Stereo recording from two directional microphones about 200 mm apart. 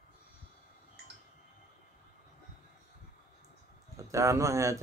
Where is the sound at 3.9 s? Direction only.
15° right (ahead or behind).